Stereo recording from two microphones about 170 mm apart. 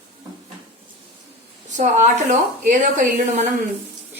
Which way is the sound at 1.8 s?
45° right (ahead or behind).